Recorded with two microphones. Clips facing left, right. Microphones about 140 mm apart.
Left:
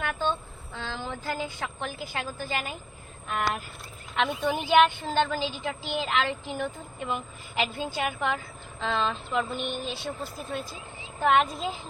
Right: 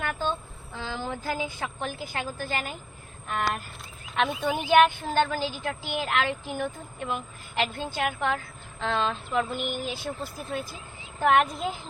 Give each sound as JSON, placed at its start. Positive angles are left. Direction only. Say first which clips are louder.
{"t": 0.0, "sound": "a sound", "louder": "left 1 dB", "side_deg": -5}
{"t": 2.4, "sound": "a woman's voice", "louder": "right 1 dB", "side_deg": 0}
{"t": 11.2, "sound": "a woman's voice", "louder": "right 1 dB", "side_deg": -5}